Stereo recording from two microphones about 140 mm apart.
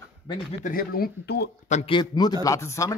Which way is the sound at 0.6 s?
85° left.